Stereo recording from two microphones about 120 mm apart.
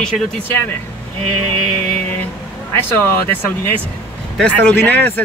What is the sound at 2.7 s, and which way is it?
Speech, 20° left (ahead or behind).